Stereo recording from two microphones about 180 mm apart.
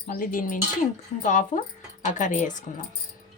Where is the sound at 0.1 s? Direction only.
50° left (ahead or behind).